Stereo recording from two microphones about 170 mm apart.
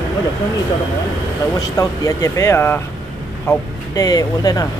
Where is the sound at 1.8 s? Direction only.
20° left (ahead or behind).